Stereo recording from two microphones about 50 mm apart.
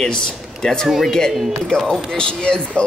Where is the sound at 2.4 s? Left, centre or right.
Left.